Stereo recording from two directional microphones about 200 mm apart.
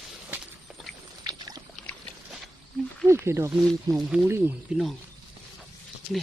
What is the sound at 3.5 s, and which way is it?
Speech, centre (ahead or behind).